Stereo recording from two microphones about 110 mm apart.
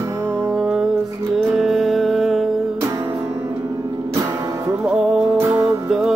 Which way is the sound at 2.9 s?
25° right (ahead or behind).